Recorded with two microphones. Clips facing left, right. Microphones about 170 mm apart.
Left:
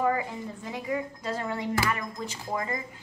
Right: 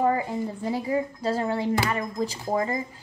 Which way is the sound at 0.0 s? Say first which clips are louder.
Right 4 dB; 30° right (ahead or behind).